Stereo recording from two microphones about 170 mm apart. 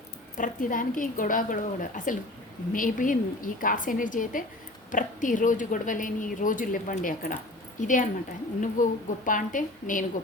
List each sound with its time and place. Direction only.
0.3 s speech: 50° left (ahead or behind)